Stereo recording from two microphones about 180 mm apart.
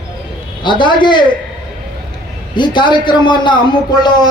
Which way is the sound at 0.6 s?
25° left (ahead or behind).